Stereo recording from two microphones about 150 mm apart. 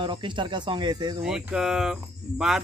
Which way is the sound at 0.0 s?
30° right (ahead or behind).